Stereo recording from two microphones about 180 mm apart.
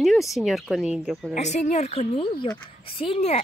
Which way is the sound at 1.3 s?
40° left (ahead or behind).